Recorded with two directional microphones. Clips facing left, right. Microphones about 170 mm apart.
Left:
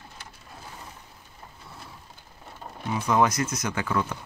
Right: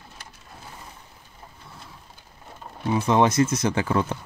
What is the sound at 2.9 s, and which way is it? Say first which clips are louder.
Speech: right 4 dB; 25° right (ahead or behind).